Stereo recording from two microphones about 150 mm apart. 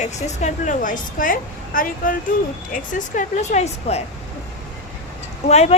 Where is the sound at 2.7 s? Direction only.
60° left (ahead or behind).